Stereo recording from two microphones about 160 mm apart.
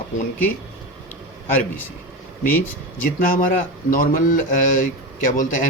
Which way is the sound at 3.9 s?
55° left (ahead or behind).